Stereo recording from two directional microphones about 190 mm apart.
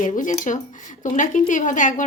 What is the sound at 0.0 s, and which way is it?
Speech, 40° left (ahead or behind).